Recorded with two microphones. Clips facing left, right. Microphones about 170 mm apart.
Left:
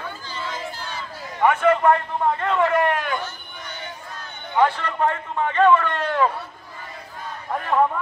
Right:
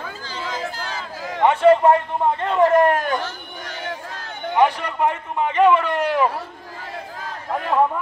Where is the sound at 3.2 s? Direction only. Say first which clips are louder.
Right 3 dB; 90° right.